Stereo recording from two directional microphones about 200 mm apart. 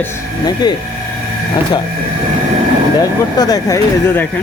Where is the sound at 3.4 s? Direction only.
20° left (ahead or behind).